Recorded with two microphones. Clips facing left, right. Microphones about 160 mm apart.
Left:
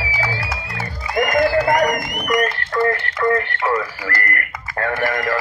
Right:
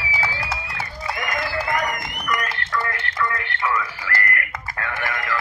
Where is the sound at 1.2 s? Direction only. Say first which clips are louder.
Left 13 dB; 50° left (ahead or behind).